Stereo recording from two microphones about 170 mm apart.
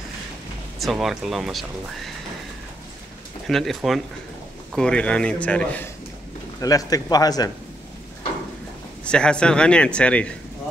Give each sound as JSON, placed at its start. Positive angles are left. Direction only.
{"t": 0.7, "sound": "speech", "side_deg": 0}
{"t": 3.4, "sound": "a man's voice", "side_deg": 0}
{"t": 6.6, "sound": "a man's voice", "side_deg": 20}
{"t": 9.0, "sound": "speech", "side_deg": 5}